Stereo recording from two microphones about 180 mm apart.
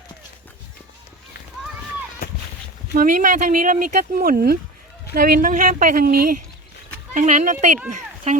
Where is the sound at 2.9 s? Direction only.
50° right (ahead or behind).